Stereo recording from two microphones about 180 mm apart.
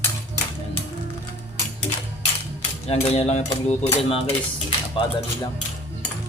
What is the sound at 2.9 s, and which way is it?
Speech, 35° left (ahead or behind).